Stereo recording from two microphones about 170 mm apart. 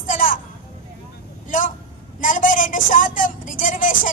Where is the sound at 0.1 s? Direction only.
55° left (ahead or behind).